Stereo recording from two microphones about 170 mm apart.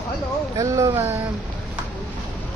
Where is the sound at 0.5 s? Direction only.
20° right (ahead or behind).